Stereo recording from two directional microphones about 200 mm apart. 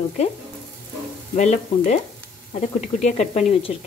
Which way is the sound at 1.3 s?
40° left (ahead or behind).